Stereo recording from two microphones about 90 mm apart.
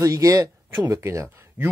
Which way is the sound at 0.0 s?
40° right (ahead or behind).